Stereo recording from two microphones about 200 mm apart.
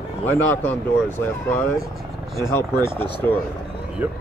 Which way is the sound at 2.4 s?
15° left (ahead or behind).